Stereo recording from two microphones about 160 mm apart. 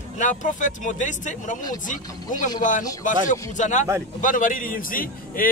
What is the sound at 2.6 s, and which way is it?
A man's voice, 55° left (ahead or behind).